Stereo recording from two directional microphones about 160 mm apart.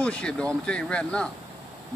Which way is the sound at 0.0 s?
5° left (ahead or behind).